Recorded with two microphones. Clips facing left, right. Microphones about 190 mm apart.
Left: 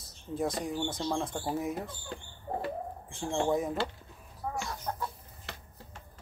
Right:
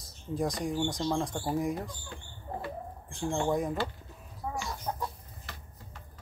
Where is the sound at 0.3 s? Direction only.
Centre (ahead or behind).